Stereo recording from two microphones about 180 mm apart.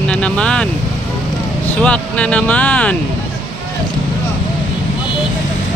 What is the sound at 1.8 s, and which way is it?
Speech, 5° left (ahead or behind).